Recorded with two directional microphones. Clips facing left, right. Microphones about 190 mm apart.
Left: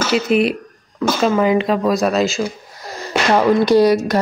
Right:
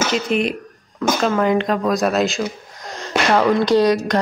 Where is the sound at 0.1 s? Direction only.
5° left (ahead or behind).